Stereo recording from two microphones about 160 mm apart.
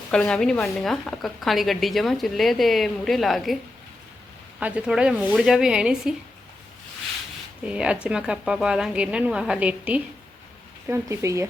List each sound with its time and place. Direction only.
0.1 s a woman's voice: 5° left (ahead or behind)
4.6 s a woman's voice: 5° right (ahead or behind)
7.6 s a woman's voice: 5° right (ahead or behind)